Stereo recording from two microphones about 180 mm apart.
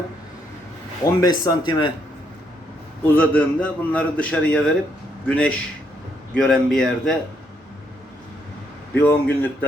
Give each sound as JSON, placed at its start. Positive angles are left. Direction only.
{"t": 1.0, "sound": "speech", "side_deg": 20}
{"t": 3.0, "sound": "a man's voice", "side_deg": 10}
{"t": 9.0, "sound": "a man's voice", "side_deg": 10}